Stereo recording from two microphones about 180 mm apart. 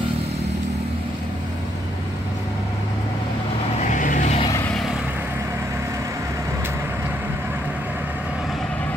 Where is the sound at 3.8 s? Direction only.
45° left (ahead or behind).